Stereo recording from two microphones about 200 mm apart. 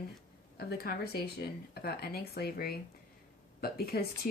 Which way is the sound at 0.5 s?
50° left (ahead or behind).